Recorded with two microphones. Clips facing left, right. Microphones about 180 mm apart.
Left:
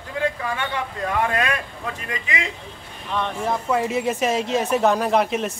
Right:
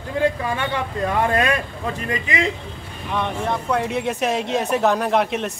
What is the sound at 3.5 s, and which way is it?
Speech, centre (ahead or behind).